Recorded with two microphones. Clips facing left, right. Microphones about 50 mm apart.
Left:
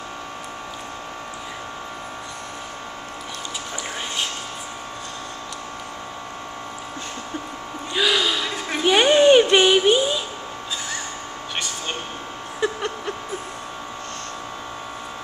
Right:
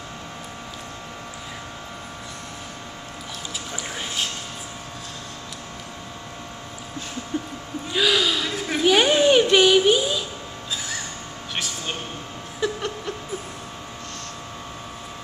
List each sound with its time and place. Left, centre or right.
7.9 s gasp: centre
9.3 s child singing: centre
12.5 s a sound: centre